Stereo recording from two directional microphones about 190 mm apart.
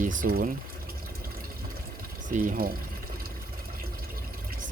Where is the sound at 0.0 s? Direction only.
45° right (ahead or behind).